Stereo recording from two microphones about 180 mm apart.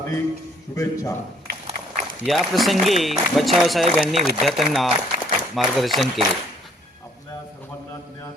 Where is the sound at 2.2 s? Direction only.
Centre (ahead or behind).